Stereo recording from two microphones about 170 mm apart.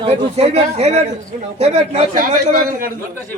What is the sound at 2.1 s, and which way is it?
Speech, 55° right (ahead or behind).